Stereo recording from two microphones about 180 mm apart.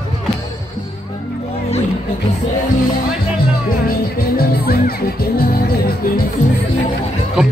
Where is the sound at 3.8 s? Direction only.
55° left (ahead or behind).